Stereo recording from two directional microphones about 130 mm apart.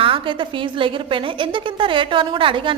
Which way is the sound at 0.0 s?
40° right (ahead or behind).